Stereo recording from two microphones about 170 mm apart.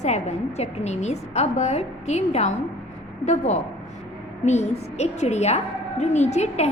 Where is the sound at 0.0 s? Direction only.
40° left (ahead or behind).